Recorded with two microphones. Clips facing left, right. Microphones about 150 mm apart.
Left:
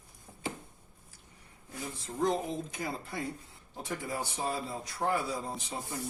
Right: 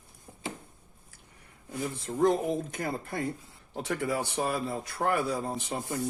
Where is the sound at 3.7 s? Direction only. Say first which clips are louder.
Right 6 dB; 75° right (ahead or behind).